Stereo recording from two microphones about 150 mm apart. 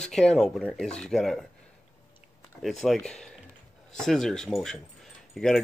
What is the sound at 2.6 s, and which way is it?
Speech, centre (ahead or behind).